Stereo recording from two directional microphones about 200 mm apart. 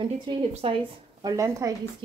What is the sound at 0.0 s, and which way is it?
Speech, 25° right (ahead or behind).